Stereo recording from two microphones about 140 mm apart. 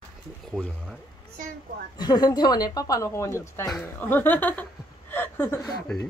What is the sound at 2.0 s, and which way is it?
A woman's voice, 30° left (ahead or behind).